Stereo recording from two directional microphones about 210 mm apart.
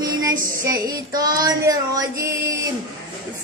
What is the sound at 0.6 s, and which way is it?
Female singing, 15° right (ahead or behind).